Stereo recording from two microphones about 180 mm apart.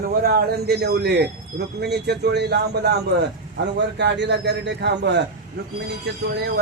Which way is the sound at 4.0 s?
75° right (ahead or behind).